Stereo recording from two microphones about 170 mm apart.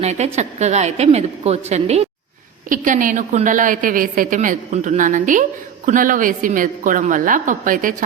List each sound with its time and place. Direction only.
0.0 s a woman's voice: 40° right (ahead or behind)
2.6 s a woman's voice: 50° right (ahead or behind)